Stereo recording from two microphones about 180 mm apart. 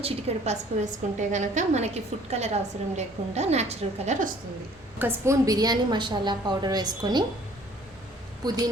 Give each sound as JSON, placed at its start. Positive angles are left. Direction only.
{"t": 0.0, "sound": "a woman's voice", "side_deg": -35}
{"t": 4.9, "sound": "a woman's voice", "side_deg": -15}
{"t": 8.4, "sound": "a woman's voice", "side_deg": -20}